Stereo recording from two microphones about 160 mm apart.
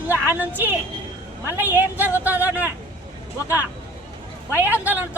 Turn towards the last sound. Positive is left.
turn(degrees=-10)  # may be behind; listen again after turning